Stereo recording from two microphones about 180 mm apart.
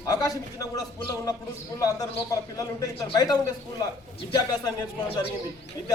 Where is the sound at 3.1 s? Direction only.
20° left (ahead or behind).